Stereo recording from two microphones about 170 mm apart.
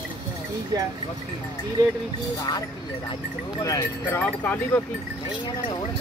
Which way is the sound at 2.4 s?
20° left (ahead or behind).